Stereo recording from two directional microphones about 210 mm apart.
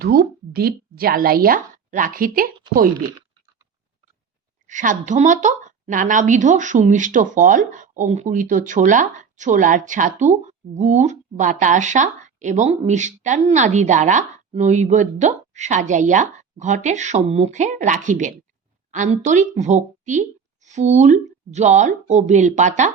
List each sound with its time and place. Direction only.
0.0 s a woman's voice: 45° right (ahead or behind)
4.6 s a woman's voice: 35° right (ahead or behind)